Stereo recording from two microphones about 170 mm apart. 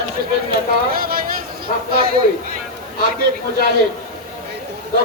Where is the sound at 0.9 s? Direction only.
60° right (ahead or behind).